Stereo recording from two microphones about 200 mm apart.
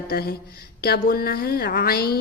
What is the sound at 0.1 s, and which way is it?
Speech, 50° left (ahead or behind).